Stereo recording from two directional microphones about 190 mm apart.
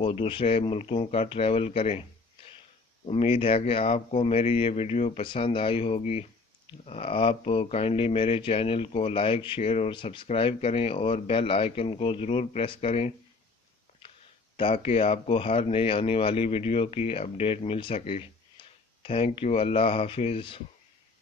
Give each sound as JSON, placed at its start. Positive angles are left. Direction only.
{"t": 0.0, "sound": "speech", "side_deg": 30}
{"t": 14.6, "sound": "speech", "side_deg": 30}
{"t": 18.6, "sound": "a sound", "side_deg": 25}
{"t": 19.0, "sound": "speech", "side_deg": 30}